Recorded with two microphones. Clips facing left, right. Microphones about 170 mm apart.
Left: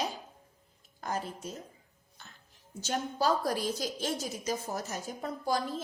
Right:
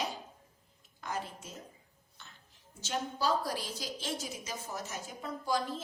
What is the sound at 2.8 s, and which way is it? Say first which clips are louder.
A woman's voice: left 3 dB; 45° left (ahead or behind).